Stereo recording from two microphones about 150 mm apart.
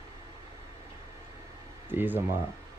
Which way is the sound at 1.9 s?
15° right (ahead or behind).